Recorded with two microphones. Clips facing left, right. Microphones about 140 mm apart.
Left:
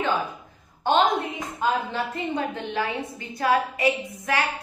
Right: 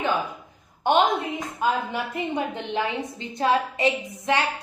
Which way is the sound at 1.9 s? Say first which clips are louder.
Even; 15° right (ahead or behind).